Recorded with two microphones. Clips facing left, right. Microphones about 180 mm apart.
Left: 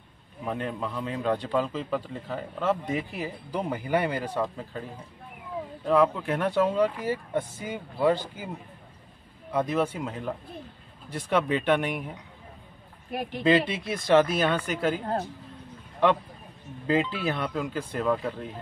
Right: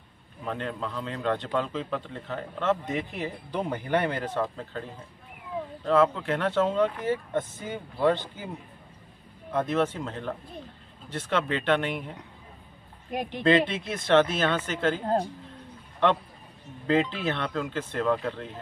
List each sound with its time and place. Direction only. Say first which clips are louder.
0.5 s a man's voice: left 1 dB; 10° left (ahead or behind)
5.9 s a man's voice: even; 15° left (ahead or behind)
9.5 s a man's voice: even; 10° left (ahead or behind)
13.1 s speech: right 1 dB; 15° right (ahead or behind)
13.4 s a man's voice: even; 10° left (ahead or behind)
16.8 s a man's voice: right 1 dB; 10° left (ahead or behind)